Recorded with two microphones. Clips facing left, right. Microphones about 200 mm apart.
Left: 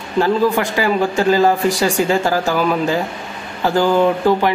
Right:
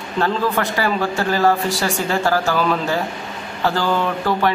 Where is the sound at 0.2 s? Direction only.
15° left (ahead or behind).